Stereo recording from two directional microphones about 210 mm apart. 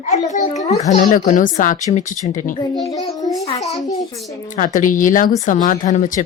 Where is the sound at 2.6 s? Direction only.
15° left (ahead or behind).